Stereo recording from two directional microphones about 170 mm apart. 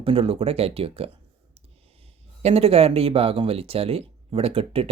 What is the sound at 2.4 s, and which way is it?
Speech, 35° right (ahead or behind).